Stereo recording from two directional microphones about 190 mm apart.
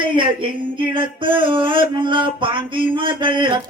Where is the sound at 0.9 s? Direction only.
25° right (ahead or behind).